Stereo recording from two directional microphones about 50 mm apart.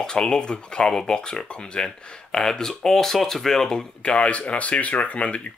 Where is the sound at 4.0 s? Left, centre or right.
Left.